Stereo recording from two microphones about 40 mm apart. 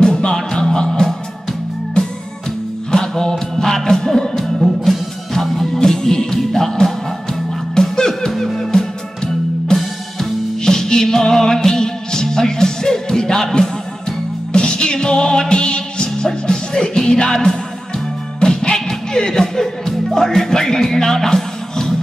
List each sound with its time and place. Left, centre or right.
0.0 s music: left
2.9 s music: centre
9.8 s music: centre
10.6 s music: centre